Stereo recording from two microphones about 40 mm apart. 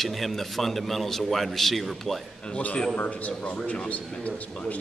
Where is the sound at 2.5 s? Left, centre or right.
Left.